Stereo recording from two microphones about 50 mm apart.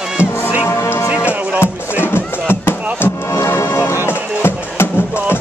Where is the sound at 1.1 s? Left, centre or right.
Right.